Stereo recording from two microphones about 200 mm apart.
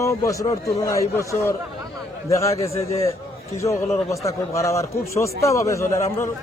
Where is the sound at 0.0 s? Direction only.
15° left (ahead or behind).